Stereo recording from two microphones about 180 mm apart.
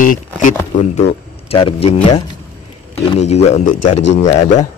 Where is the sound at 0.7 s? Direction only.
35° left (ahead or behind).